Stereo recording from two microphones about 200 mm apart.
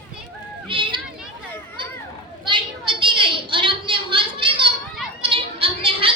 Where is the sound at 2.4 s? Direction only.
25° right (ahead or behind).